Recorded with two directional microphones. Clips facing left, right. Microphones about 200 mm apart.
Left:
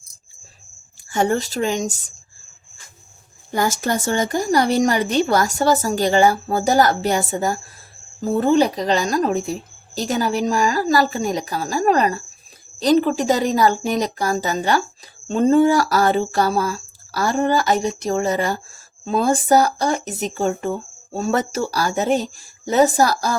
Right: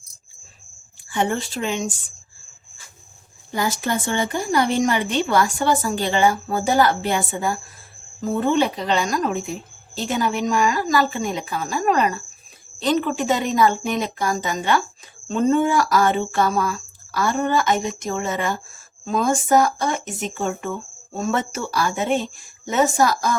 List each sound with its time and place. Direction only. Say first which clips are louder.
1.1 s a woman's voice: left 3 dB; 40° left (ahead or behind)
3.5 s a woman's voice: left 3 dB; 45° left (ahead or behind)